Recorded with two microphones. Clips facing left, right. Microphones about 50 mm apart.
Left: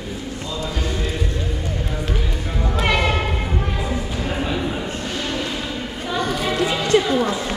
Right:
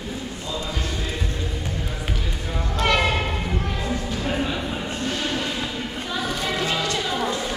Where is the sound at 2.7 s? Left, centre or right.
Centre.